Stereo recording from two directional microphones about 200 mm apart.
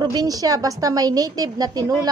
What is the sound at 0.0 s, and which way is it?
A woman's voice, 20° right (ahead or behind).